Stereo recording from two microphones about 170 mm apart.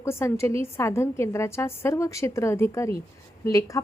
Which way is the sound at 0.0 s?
15° left (ahead or behind).